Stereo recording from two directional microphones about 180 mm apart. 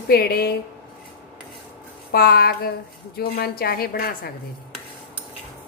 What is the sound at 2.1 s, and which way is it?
Speech, 60° left (ahead or behind).